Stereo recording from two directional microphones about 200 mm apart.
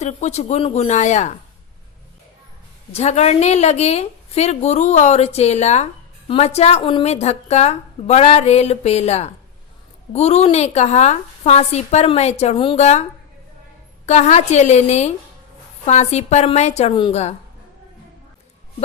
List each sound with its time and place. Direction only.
0.0 s a woman's voice: 35° left (ahead or behind)
2.9 s a woman's voice: 35° left (ahead or behind)
14.1 s a woman's voice: 35° left (ahead or behind)